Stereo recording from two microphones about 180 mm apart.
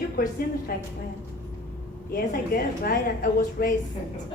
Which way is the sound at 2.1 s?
55° left (ahead or behind).